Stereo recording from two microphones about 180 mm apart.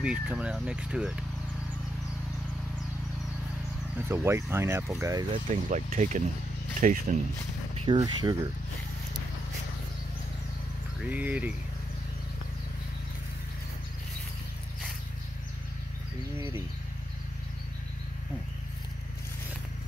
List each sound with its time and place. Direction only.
0.0 s speech: 5° right (ahead or behind)
4.1 s speech: 15° right (ahead or behind)
5.5 s speech: 40° right (ahead or behind)
7.7 s a sound: 30° right (ahead or behind)
8.0 s speech: 20° right (ahead or behind)
11.1 s speech: 10° right (ahead or behind)
16.3 s speech: 15° right (ahead or behind)